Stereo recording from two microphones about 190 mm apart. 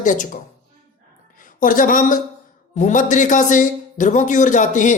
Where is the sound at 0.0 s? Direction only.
40° left (ahead or behind).